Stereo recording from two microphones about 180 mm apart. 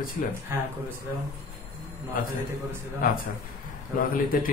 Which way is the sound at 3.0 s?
50° left (ahead or behind).